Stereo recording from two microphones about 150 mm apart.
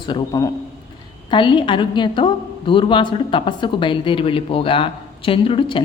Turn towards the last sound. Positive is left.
turn(degrees=35)  # may be behind; listen again after turning